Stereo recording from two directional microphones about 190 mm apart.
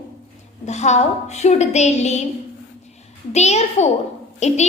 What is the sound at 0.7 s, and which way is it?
A child's voice, 35° left (ahead or behind).